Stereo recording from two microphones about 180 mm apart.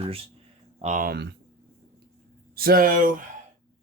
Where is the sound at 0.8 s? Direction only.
50° right (ahead or behind).